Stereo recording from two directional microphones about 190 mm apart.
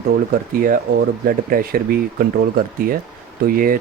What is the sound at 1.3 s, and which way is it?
Speech, 50° right (ahead or behind).